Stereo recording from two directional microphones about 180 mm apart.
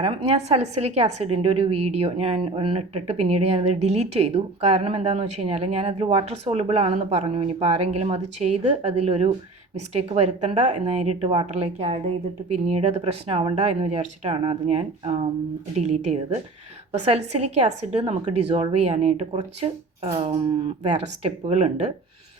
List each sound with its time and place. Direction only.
0.0 s a woman's voice: 35° right (ahead or behind)